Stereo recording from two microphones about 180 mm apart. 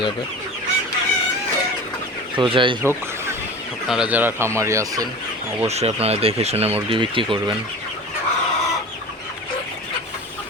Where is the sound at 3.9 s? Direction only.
5° right (ahead or behind).